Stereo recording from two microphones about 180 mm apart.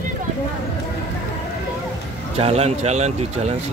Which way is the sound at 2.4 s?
35° right (ahead or behind).